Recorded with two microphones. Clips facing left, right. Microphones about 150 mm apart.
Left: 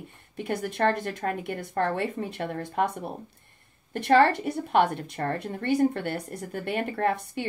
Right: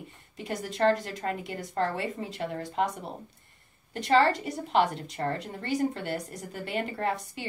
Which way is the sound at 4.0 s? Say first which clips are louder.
Left 3 dB; 55° left (ahead or behind).